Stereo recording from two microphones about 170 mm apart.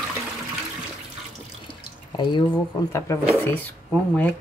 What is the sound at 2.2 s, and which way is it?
Speech, 25° left (ahead or behind).